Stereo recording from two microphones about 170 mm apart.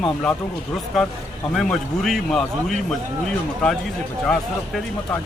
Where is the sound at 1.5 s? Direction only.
Centre (ahead or behind).